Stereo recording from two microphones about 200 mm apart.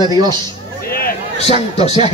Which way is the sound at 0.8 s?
50° left (ahead or behind).